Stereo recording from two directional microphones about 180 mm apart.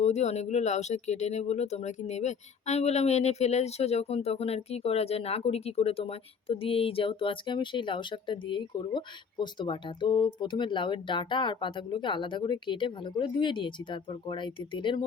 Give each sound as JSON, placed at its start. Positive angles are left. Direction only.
{"t": 0.0, "sound": "speech", "side_deg": 40}